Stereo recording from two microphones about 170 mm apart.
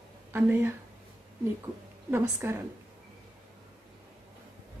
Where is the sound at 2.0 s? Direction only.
15° right (ahead or behind).